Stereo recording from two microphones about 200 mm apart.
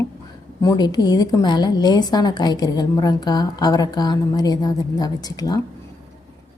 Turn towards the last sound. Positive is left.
turn(degrees=20)  # may be behind; listen again after turning